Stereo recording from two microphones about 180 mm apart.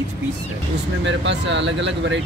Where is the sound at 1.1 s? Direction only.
80° right.